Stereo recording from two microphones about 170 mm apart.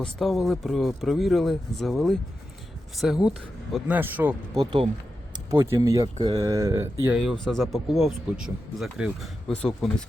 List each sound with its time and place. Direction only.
0.0 s speech: centre (ahead or behind)
4.6 s speech: 30° right (ahead or behind)
5.5 s speech: 15° right (ahead or behind)
6.2 s speech: 30° right (ahead or behind)
6.5 s speech: 20° right (ahead or behind)
7.1 s speech: centre (ahead or behind)